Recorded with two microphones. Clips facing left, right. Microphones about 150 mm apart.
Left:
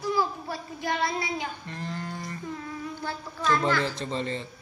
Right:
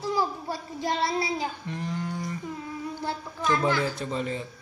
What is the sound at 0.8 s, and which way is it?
Speech, 30° right (ahead or behind).